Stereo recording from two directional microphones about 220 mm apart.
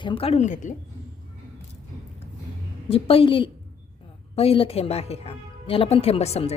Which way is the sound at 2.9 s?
25° left (ahead or behind).